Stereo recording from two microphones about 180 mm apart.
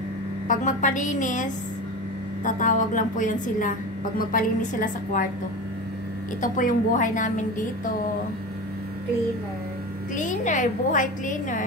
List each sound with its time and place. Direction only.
0.5 s a woman's voice: 45° left (ahead or behind)
6.4 s a woman's voice: 45° left (ahead or behind)
10.1 s a woman's voice: 45° left (ahead or behind)